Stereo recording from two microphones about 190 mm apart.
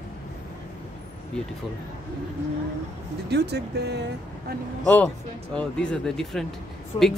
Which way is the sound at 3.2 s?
60° right (ahead or behind).